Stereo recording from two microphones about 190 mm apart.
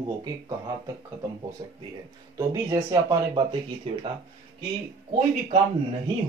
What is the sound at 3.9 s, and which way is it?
Speech, 30° right (ahead or behind).